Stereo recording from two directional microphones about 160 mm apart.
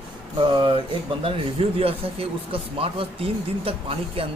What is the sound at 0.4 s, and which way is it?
Speech, 30° right (ahead or behind).